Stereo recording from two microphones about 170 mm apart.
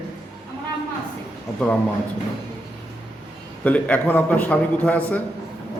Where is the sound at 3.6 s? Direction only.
10° left (ahead or behind).